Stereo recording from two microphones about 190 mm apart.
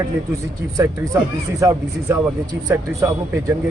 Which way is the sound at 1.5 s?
15° right (ahead or behind).